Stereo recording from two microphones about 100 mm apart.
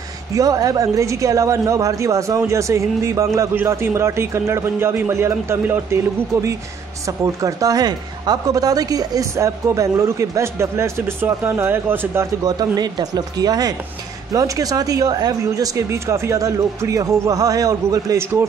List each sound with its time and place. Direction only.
0.3 s a man's voice: 35° right (ahead or behind)
7.1 s speech: 35° right (ahead or behind)
12.4 s speech: 45° right (ahead or behind)